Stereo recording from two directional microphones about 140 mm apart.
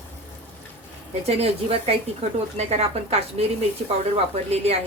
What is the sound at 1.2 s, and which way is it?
A woman's voice, 45° right (ahead or behind).